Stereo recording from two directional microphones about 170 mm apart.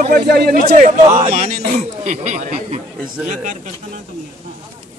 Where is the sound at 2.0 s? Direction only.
45° right (ahead or behind).